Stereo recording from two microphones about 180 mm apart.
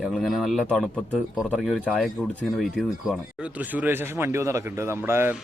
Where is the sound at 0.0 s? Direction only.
Centre (ahead or behind).